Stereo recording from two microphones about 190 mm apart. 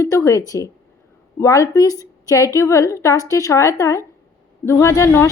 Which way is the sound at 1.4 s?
15° left (ahead or behind).